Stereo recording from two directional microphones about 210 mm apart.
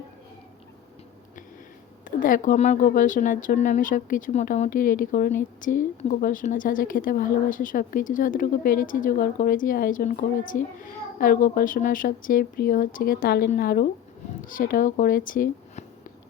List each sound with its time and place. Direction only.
2.0 s speech: 40° left (ahead or behind)